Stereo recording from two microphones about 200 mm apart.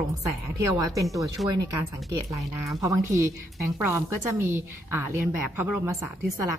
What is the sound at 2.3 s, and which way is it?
A woman's voice, 15° right (ahead or behind).